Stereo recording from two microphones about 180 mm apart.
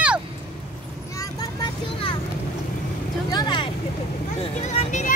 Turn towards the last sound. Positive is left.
turn(degrees=40)  # may be behind; listen again after turning